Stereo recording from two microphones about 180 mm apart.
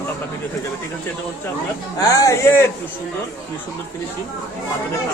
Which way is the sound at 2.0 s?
20° left (ahead or behind).